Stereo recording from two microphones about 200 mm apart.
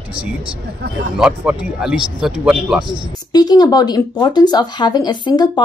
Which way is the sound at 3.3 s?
20° left (ahead or behind).